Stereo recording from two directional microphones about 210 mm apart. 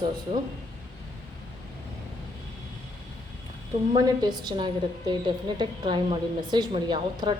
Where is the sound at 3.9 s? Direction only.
20° right (ahead or behind).